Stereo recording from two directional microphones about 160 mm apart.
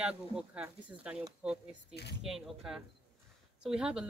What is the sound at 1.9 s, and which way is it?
Speech, 90° left.